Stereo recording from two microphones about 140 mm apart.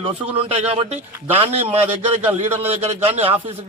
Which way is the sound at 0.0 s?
40° right (ahead or behind).